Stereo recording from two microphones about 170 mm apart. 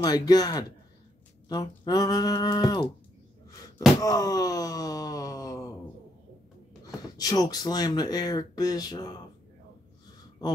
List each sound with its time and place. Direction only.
0.0 s speech: 25° left (ahead or behind)
4.0 s a sound: 20° left (ahead or behind)
6.9 s speech: 20° left (ahead or behind)